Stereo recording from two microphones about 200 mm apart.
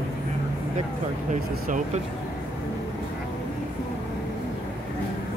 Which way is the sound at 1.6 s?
40° right (ahead or behind).